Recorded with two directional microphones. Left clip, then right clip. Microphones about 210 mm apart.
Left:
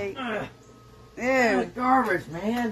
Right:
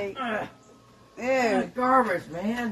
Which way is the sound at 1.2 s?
10° left (ahead or behind).